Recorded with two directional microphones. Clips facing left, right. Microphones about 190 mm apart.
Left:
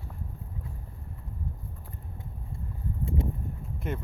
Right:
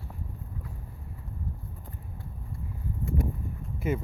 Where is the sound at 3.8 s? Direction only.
5° right (ahead or behind).